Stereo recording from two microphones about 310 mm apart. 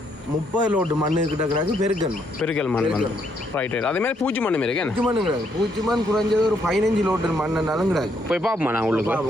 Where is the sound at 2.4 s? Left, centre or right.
Centre.